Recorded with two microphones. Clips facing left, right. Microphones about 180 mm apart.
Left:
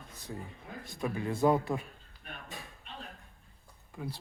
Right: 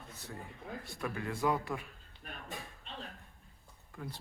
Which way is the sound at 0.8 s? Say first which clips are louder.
Left 6 dB; 20° left (ahead or behind).